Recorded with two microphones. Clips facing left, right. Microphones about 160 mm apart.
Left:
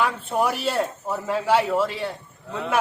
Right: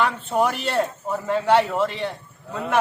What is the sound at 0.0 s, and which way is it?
Speech, 10° left (ahead or behind).